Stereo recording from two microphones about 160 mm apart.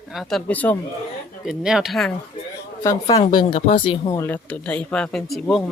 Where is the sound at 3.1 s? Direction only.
35° left (ahead or behind).